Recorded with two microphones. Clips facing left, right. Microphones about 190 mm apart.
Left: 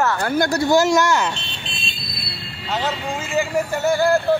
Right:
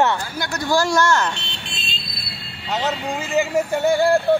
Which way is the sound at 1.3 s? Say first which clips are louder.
Left 1 dB; 70° right (ahead or behind).